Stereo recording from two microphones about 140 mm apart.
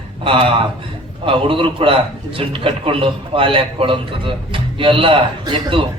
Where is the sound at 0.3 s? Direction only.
40° right (ahead or behind).